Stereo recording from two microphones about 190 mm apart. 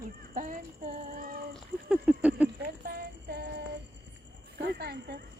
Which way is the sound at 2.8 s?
55° right (ahead or behind).